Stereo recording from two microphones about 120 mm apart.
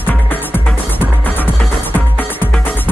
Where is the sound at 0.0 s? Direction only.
15° left (ahead or behind).